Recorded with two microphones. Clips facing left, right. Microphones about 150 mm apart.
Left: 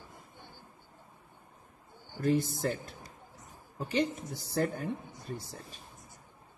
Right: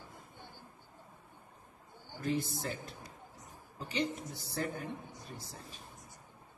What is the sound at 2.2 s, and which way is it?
A man's voice, 50° left (ahead or behind).